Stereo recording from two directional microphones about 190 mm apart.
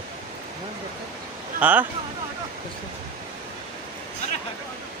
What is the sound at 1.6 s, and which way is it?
Speech, 10° right (ahead or behind).